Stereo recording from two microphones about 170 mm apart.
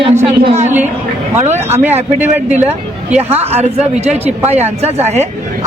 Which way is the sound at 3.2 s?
40° right (ahead or behind).